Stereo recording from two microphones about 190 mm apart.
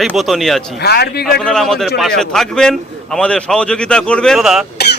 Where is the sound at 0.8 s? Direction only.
60° left (ahead or behind).